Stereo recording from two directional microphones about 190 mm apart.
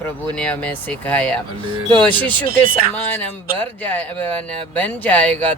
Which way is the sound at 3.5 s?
10° left (ahead or behind).